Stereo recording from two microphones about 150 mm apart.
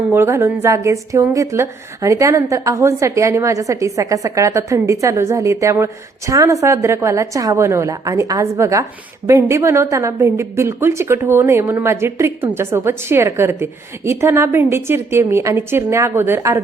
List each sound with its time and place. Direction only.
0.1 s a woman's voice: 15° right (ahead or behind)